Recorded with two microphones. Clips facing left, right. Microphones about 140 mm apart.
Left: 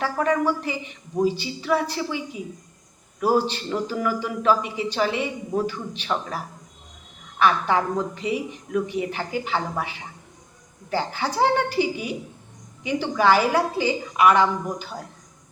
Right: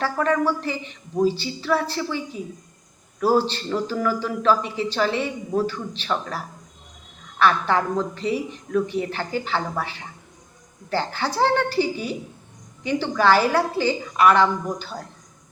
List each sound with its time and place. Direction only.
0.0 s a woman's voice: 15° left (ahead or behind)